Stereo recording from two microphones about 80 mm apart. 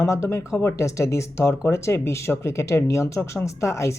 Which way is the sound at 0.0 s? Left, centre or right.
Left.